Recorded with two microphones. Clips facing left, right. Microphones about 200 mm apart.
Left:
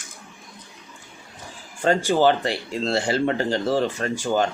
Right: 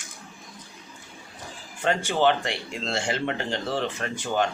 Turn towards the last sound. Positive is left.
turn(degrees=35)  # may be behind; listen again after turning